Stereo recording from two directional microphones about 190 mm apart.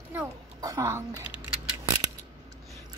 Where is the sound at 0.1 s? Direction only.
15° right (ahead or behind).